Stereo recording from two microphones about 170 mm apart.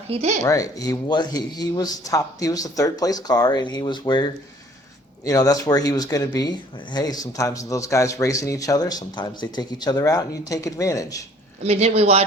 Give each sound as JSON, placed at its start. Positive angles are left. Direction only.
{"t": 0.1, "sound": "speech", "side_deg": -40}
{"t": 0.4, "sound": "speech", "side_deg": 20}
{"t": 11.6, "sound": "speech", "side_deg": -40}